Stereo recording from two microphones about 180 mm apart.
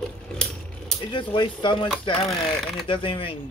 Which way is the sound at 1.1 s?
25° left (ahead or behind).